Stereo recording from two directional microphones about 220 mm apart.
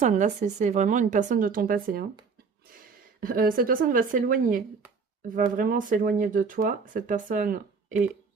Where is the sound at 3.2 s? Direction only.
40° right (ahead or behind).